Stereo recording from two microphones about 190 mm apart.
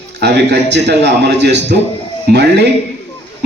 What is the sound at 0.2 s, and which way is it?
A man's voice, 60° right (ahead or behind).